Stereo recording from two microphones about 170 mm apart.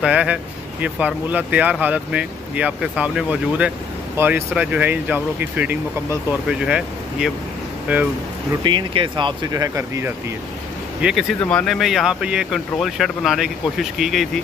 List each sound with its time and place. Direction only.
0.0 s speech: 5° right (ahead or behind)
8.6 s speech: 30° right (ahead or behind)
11.0 s speech: 5° right (ahead or behind)